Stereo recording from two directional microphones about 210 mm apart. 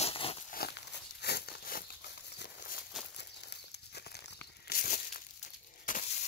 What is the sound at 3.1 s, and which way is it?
Crumpling, 55° left (ahead or behind).